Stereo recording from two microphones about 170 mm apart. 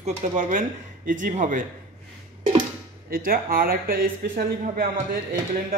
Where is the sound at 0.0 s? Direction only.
45° right (ahead or behind).